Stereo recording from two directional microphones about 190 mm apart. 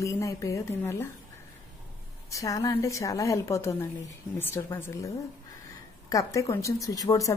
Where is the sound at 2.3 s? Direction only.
15° left (ahead or behind).